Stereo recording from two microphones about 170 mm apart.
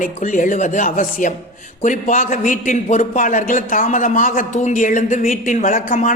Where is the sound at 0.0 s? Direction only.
50° left (ahead or behind).